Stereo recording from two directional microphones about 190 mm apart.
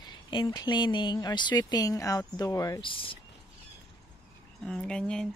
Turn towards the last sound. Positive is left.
turn(degrees=5)  # may be behind; listen again after turning